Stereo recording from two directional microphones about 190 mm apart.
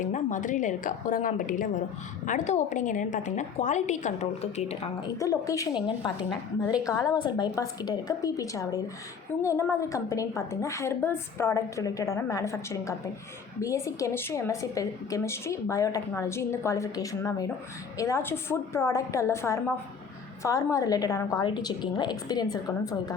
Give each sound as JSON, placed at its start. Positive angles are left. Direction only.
{"t": 0.0, "sound": "a woman's voice", "side_deg": 40}
{"t": 5.0, "sound": "a woman's voice", "side_deg": 20}